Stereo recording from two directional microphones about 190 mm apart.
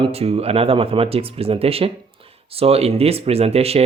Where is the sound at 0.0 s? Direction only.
30° right (ahead or behind).